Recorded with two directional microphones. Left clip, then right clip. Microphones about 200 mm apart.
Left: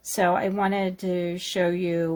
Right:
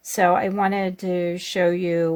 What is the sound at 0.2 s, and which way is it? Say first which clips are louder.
Speech: right 4 dB; 30° right (ahead or behind).